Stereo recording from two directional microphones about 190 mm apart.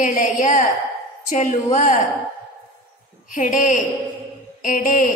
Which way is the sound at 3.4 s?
40° left (ahead or behind).